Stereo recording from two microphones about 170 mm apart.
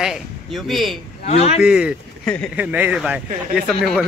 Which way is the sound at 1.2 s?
40° left (ahead or behind).